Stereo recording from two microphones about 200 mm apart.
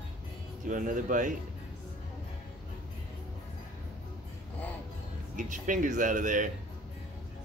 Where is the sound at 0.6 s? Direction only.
40° right (ahead or behind).